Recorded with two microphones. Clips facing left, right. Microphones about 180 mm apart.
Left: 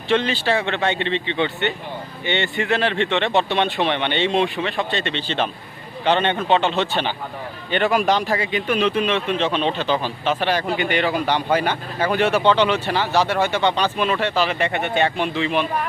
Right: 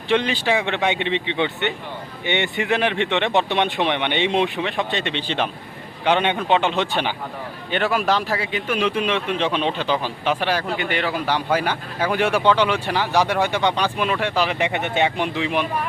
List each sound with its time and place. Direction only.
0.1 s speech: 15° right (ahead or behind)
7.7 s speech: centre (ahead or behind)